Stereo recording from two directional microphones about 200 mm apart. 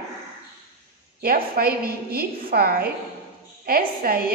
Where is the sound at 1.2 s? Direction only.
50° right (ahead or behind).